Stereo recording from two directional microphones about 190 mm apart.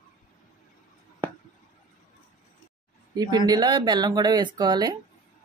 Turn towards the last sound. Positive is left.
turn(degrees=-20)  # may be behind; listen again after turning